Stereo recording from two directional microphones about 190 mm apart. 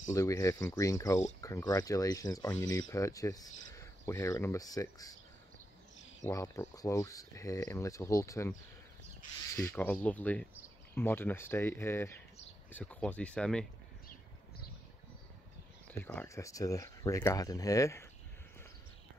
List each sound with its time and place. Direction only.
0.1 s speech: 15° left (ahead or behind)
6.2 s speech: 15° left (ahead or behind)
9.6 s speech: 10° left (ahead or behind)
15.9 s speech: 10° left (ahead or behind)